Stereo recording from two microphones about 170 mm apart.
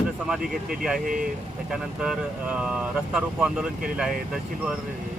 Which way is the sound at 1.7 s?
5° right (ahead or behind).